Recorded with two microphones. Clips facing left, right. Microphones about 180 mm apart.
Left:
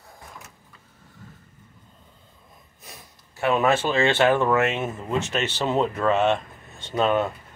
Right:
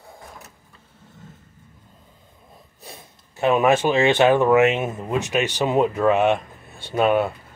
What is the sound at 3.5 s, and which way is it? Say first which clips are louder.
Speech: right 4 dB; 15° right (ahead or behind).